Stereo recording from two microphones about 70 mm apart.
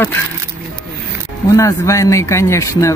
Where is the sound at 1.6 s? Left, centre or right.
Left.